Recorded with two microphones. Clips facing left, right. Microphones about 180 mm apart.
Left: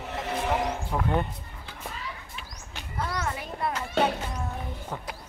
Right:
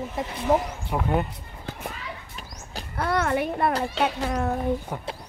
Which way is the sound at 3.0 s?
65° right (ahead or behind).